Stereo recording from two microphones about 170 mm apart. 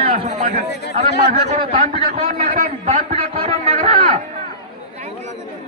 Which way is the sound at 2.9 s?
35° right (ahead or behind).